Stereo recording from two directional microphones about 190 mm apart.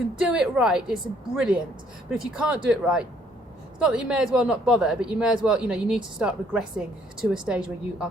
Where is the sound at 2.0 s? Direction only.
5° right (ahead or behind).